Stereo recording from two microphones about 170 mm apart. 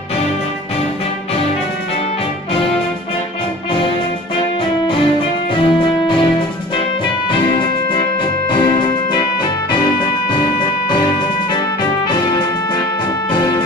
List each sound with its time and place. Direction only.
5.6 s music: 30° left (ahead or behind)
8.5 s music: 25° left (ahead or behind)